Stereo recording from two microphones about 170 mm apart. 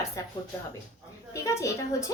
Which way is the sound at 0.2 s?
20° left (ahead or behind).